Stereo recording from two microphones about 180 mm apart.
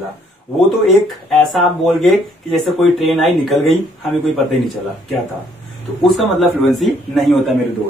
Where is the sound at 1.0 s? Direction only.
Centre (ahead or behind).